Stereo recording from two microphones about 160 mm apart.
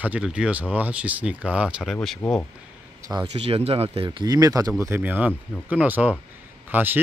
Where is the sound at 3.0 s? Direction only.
20° right (ahead or behind).